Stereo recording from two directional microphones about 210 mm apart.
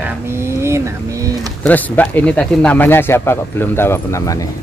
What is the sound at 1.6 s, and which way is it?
Speech, 10° left (ahead or behind).